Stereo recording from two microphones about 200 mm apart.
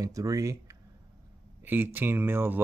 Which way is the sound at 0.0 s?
15° right (ahead or behind).